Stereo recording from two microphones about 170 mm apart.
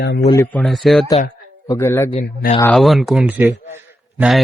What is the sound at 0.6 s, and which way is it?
Speech, centre (ahead or behind).